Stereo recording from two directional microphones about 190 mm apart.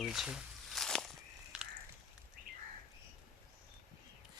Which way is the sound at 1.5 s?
5° right (ahead or behind).